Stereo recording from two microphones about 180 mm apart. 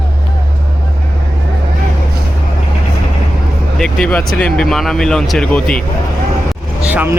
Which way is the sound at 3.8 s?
5° left (ahead or behind).